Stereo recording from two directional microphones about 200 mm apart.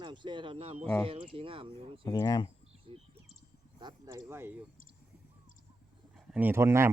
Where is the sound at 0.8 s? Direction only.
5° left (ahead or behind).